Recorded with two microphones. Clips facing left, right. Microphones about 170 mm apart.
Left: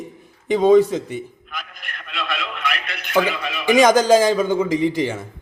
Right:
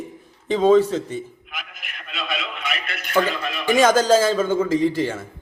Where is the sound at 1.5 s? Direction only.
Centre (ahead or behind).